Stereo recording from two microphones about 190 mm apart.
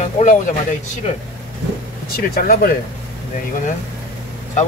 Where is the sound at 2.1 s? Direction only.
55° left (ahead or behind).